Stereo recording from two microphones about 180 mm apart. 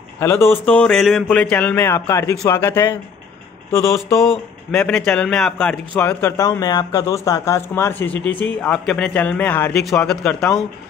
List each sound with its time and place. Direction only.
0.2 s a man's voice: 15° left (ahead or behind)
4.2 s a man's voice: centre (ahead or behind)